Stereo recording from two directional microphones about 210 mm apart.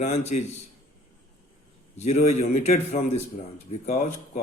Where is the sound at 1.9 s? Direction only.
35° left (ahead or behind).